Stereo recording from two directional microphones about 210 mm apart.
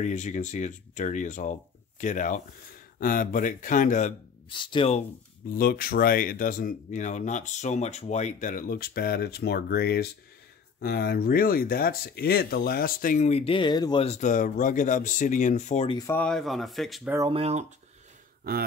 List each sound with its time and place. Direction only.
0.0 s speech: 35° left (ahead or behind)
4.5 s speech: 25° left (ahead or behind)
5.5 s speech: 45° left (ahead or behind)
16.0 s speech: 10° left (ahead or behind)
17.3 s speech: 30° right (ahead or behind)
18.4 s speech: 45° right (ahead or behind)